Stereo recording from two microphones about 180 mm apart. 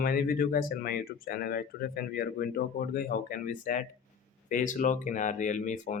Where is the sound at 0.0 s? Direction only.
55° left (ahead or behind).